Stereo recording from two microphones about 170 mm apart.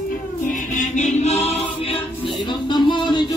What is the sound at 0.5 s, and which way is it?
Music, 50° left (ahead or behind).